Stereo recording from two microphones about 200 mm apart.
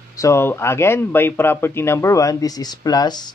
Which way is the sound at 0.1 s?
15° left (ahead or behind).